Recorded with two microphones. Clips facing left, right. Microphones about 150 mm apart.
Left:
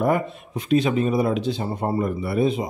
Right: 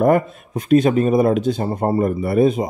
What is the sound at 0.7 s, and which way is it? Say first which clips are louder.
Speech: right 5 dB; 45° right (ahead or behind).